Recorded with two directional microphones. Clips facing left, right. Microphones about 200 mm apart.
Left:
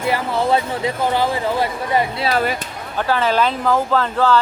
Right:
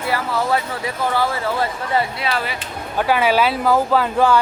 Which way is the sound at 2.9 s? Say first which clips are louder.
Right 1 dB; 10° right (ahead or behind).